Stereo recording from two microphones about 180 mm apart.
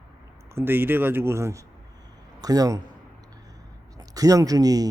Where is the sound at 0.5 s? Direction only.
10° right (ahead or behind).